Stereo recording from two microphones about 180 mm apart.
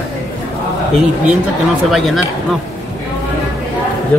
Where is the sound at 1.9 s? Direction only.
Centre (ahead or behind).